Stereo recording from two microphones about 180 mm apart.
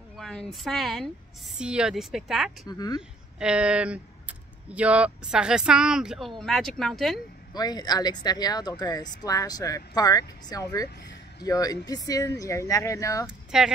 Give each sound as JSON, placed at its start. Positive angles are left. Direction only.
{"t": 0.2, "sound": "speech", "side_deg": 0}
{"t": 2.6, "sound": "speech", "side_deg": 20}
{"t": 3.3, "sound": "speech", "side_deg": -5}
{"t": 7.5, "sound": "speech", "side_deg": 20}
{"t": 13.5, "sound": "speech", "side_deg": -5}